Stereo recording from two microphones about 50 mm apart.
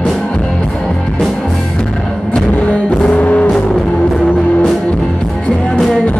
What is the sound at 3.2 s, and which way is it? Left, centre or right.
Vehicle, left.